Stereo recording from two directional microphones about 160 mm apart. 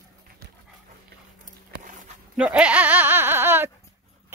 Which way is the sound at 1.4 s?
55° right (ahead or behind).